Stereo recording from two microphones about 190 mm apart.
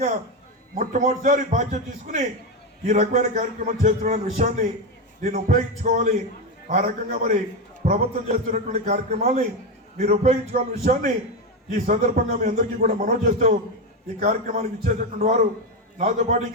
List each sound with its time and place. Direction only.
0.8 s a man's voice: 45° right (ahead or behind)